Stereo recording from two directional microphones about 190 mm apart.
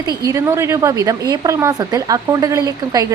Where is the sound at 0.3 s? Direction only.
15° right (ahead or behind).